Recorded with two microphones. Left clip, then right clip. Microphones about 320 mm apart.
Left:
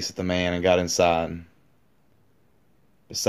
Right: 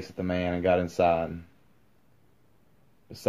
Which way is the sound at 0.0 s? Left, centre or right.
Left.